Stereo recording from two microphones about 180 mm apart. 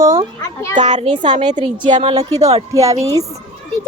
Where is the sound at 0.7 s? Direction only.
40° right (ahead or behind).